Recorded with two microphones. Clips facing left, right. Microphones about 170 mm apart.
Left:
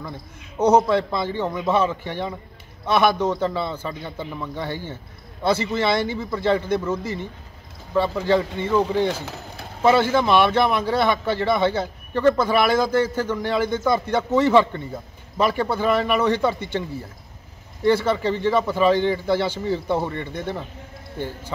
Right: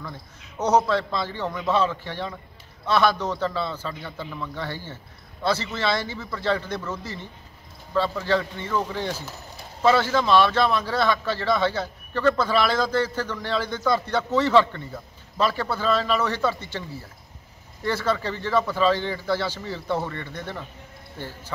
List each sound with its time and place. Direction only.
0.7 s a man's voice: 15° left (ahead or behind)
9.1 s a sound: 55° left (ahead or behind)
9.8 s a man's voice: 15° left (ahead or behind)
17.8 s a man's voice: 15° left (ahead or behind)